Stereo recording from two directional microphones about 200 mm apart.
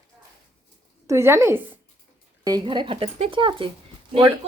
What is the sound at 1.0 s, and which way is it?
A woman's voice, 15° right (ahead or behind).